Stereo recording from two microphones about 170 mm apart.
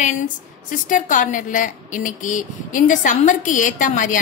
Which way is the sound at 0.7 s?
50° left (ahead or behind).